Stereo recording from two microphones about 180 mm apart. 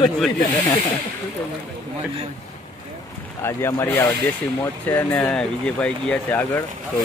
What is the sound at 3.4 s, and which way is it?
Speech, 15° left (ahead or behind).